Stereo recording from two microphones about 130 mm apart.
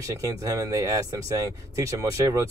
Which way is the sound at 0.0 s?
25° right (ahead or behind).